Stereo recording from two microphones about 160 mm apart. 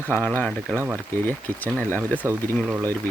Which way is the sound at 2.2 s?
15° right (ahead or behind).